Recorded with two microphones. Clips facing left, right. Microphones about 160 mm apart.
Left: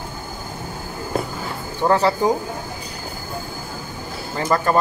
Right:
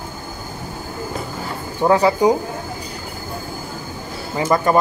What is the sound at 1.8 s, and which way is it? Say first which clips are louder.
Speech: right 3 dB; 10° right (ahead or behind).